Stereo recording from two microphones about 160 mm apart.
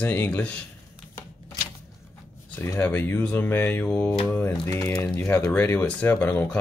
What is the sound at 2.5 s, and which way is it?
Speech, 15° left (ahead or behind).